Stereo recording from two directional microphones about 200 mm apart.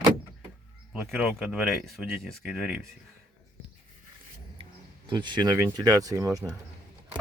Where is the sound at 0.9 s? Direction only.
Centre (ahead or behind).